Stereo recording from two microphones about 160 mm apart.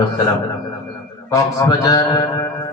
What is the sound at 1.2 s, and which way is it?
A man's voice, 20° left (ahead or behind).